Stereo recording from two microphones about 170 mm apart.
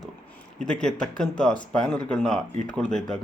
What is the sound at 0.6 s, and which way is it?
Speech, 5° left (ahead or behind).